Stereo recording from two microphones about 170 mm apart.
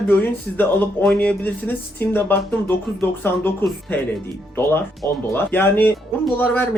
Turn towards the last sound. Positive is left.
turn(degrees=10)  # may be behind; listen again after turning